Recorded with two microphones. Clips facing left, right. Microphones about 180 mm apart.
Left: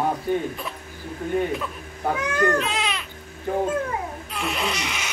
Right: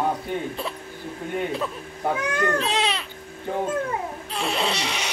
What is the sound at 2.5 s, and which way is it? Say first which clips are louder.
Baby cry: right 1 dB; 30° right (ahead or behind).